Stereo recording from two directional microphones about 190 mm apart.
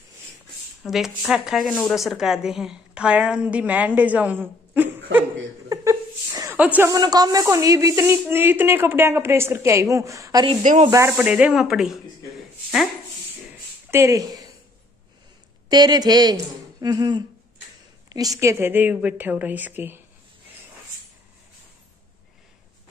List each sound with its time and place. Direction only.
0.8 s a woman's voice: centre (ahead or behind)
5.7 s a sound: 15° right (ahead or behind)
6.9 s speech: 20° right (ahead or behind)
10.6 s speech: 40° right (ahead or behind)
10.9 s a woman's voice: 10° right (ahead or behind)
13.8 s speech: 15° right (ahead or behind)
15.7 s speech: 20° right (ahead or behind)